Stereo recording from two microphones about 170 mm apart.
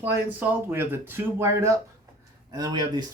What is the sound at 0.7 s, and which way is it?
Speech, 10° right (ahead or behind).